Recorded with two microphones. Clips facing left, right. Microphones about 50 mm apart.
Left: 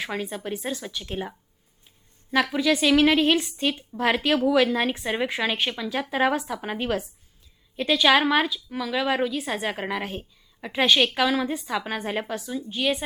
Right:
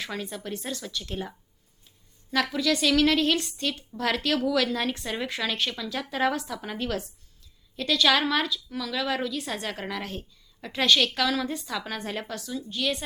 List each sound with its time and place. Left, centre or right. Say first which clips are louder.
0.0 s speech: left 4 dB; centre
2.3 s a woman's voice: left 3 dB; left